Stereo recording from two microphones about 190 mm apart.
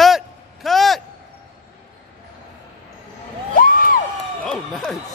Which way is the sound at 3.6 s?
45° left (ahead or behind).